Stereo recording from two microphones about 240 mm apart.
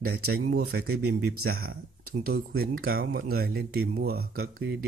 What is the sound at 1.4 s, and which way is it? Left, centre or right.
Speech, right.